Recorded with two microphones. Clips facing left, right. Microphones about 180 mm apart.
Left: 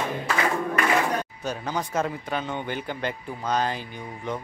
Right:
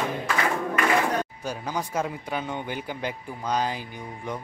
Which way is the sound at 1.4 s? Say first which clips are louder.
Left 1 dB; 10° right (ahead or behind).